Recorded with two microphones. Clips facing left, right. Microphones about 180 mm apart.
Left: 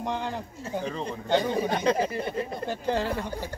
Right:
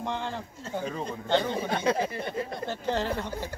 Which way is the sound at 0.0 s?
15° left (ahead or behind).